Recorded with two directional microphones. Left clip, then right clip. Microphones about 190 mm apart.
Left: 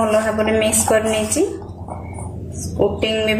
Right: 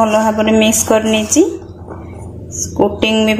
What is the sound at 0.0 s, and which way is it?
A woman's voice, 35° right (ahead or behind).